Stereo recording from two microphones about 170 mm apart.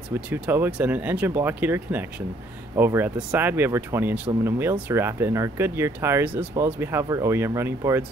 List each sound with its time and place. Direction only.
0.3 s speech: 10° right (ahead or behind)